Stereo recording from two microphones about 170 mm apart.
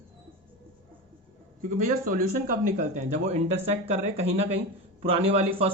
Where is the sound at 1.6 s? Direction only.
50° right (ahead or behind).